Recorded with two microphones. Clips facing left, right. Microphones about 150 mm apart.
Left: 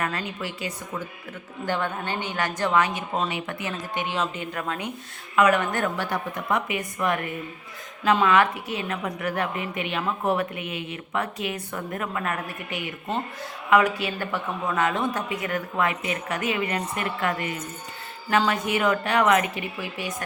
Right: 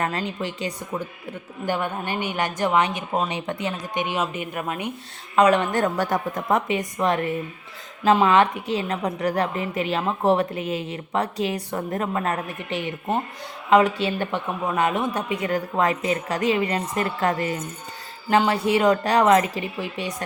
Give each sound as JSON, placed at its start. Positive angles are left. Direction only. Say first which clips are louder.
{"t": 0.0, "sound": "speech", "louder": "right 3 dB", "side_deg": -30}
{"t": 1.6, "sound": "a woman's voice", "louder": "right 2 dB", "side_deg": -15}
{"t": 5.4, "sound": "a woman's voice", "louder": "right 3 dB", "side_deg": -30}
{"t": 6.7, "sound": "a woman's voice", "louder": "right 4 dB", "side_deg": -30}